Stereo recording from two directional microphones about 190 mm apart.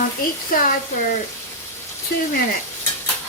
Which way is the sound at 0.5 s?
45° left (ahead or behind).